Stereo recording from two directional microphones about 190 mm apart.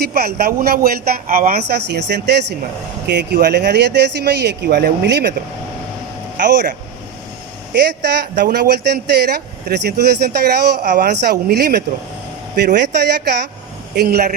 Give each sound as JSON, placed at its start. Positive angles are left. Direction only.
{"t": 0.0, "sound": "speech", "side_deg": -55}
{"t": 6.4, "sound": "speech", "side_deg": -65}
{"t": 7.7, "sound": "speech", "side_deg": -60}